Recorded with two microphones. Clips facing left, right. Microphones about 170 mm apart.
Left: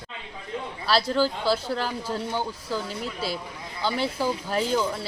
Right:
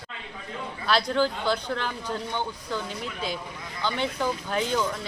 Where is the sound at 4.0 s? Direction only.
5° left (ahead or behind).